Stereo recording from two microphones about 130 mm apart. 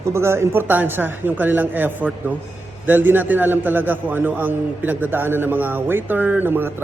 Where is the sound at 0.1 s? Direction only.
20° right (ahead or behind).